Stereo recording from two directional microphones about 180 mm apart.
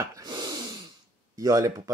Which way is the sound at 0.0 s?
20° right (ahead or behind).